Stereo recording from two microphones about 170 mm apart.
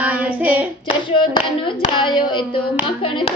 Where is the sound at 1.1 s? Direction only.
30° left (ahead or behind).